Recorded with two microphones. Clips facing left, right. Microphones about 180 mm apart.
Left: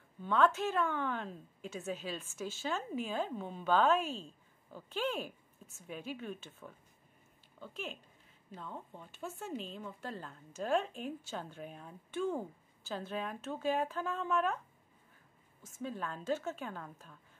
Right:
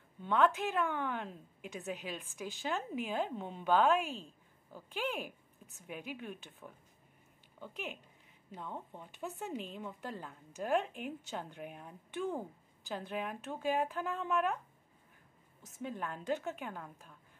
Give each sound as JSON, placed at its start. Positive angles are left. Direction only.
{"t": 0.2, "sound": "speech", "side_deg": -15}
{"t": 15.6, "sound": "speech", "side_deg": -20}